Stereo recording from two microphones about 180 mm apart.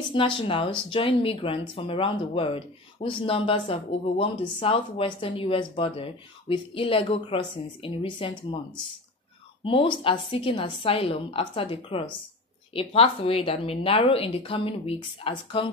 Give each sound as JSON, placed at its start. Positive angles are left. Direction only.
{"t": 0.1, "sound": "speech", "side_deg": 30}
{"t": 9.7, "sound": "a woman's voice", "side_deg": 30}